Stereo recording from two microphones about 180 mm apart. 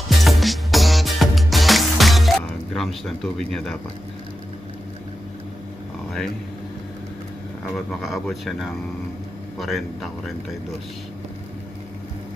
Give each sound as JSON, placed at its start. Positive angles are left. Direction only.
{"t": 0.2, "sound": "music", "side_deg": 0}
{"t": 7.6, "sound": "speech", "side_deg": 0}